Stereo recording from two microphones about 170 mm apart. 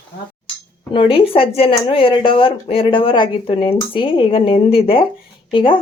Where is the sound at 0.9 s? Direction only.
30° left (ahead or behind).